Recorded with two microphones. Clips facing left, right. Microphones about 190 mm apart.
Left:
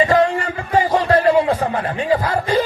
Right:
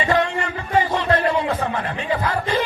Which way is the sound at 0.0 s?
35° left (ahead or behind).